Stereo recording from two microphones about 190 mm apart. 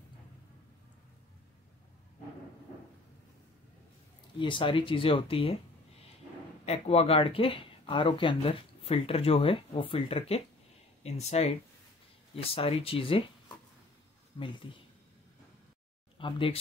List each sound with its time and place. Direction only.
4.4 s speech: 25° left (ahead or behind)
6.6 s speech: 35° left (ahead or behind)
12.5 s speech: 30° left (ahead or behind)
14.4 s speech: 25° left (ahead or behind)
16.2 s speech: 25° left (ahead or behind)